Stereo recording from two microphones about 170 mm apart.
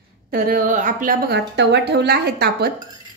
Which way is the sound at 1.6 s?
85° right.